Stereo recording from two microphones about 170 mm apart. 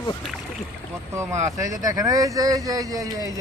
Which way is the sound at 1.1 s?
15° right (ahead or behind).